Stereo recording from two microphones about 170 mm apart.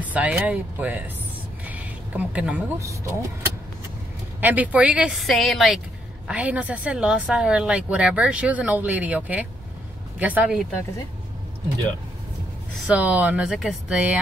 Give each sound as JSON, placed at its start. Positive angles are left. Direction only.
{"t": 0.0, "sound": "speech", "side_deg": -10}
{"t": 1.7, "sound": "a sound", "side_deg": -10}
{"t": 2.8, "sound": "speech", "side_deg": -15}
{"t": 4.4, "sound": "speech", "side_deg": -10}
{"t": 12.8, "sound": "speech", "side_deg": -5}